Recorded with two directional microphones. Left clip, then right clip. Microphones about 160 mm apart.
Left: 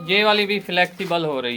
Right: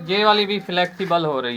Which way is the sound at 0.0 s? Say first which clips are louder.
Even; 20° right (ahead or behind).